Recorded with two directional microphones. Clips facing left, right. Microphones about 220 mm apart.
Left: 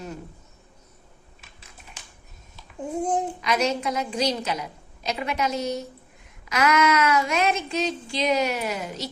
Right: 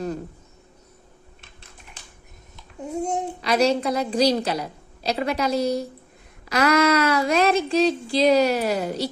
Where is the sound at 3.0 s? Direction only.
35° right (ahead or behind).